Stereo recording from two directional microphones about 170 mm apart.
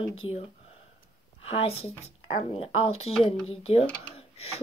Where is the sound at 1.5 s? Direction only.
35° left (ahead or behind).